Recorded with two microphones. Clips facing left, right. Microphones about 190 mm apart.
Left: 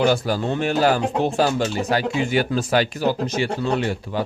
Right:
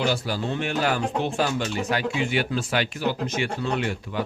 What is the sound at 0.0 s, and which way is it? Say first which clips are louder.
Speech: left 6 dB; 50° left (ahead or behind).